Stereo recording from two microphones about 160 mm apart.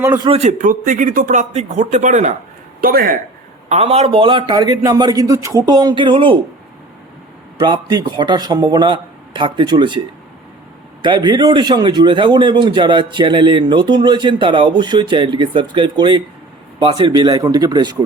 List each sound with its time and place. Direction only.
0.0 s a man's voice: 15° right (ahead or behind)
0.3 s speech: 40° right (ahead or behind)
2.8 s a man's voice: 65° right (ahead or behind)
3.7 s speech: 40° right (ahead or behind)
7.6 s speech: 25° right (ahead or behind)
11.0 s speech: 30° right (ahead or behind)